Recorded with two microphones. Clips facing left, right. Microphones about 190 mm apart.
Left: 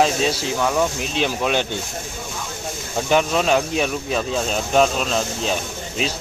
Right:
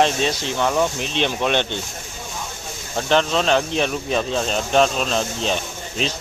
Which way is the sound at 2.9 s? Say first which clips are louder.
Even; 10° left (ahead or behind).